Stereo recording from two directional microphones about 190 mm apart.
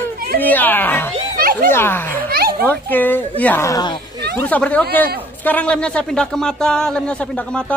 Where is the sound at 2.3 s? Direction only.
55° right (ahead or behind).